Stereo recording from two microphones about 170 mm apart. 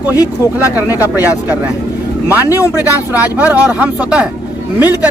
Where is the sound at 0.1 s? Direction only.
20° left (ahead or behind).